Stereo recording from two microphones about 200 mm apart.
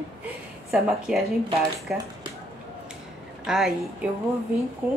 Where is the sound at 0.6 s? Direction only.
5° right (ahead or behind).